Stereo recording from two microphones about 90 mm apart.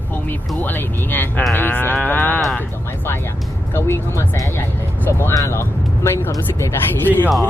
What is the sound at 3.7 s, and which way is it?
Speech, 30° left (ahead or behind).